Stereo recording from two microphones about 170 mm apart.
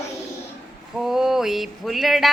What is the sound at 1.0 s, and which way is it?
Speech, 5° right (ahead or behind).